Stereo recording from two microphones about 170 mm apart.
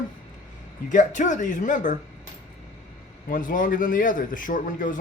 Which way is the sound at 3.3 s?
55° left (ahead or behind).